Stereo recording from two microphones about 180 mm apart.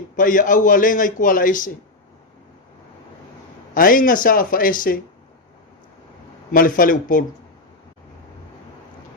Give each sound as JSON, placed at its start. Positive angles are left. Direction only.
{"t": 0.2, "sound": "a man's voice", "side_deg": 50}
{"t": 3.8, "sound": "a man's voice", "side_deg": 50}
{"t": 6.5, "sound": "a man's voice", "side_deg": 50}